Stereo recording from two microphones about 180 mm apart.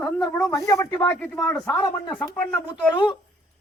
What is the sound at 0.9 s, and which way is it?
Speech, 10° left (ahead or behind).